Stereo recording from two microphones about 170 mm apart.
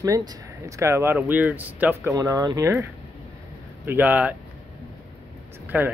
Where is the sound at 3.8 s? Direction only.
10° right (ahead or behind).